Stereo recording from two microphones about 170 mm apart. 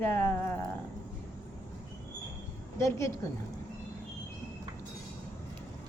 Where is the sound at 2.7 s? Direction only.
15° left (ahead or behind).